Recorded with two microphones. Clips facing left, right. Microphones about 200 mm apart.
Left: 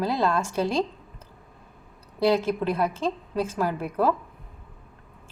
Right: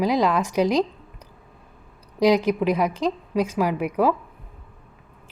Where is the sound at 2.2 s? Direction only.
15° right (ahead or behind).